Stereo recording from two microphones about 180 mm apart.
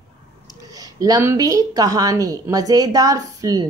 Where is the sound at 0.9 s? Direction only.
20° right (ahead or behind).